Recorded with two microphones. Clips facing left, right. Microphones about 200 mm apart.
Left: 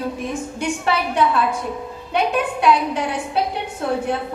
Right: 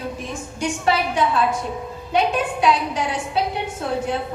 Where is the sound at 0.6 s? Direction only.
60° left (ahead or behind).